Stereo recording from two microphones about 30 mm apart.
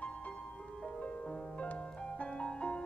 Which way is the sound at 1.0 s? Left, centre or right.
Left.